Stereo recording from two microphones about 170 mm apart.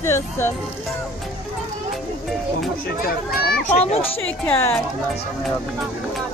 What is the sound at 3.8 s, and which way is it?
Speech, 35° left (ahead or behind).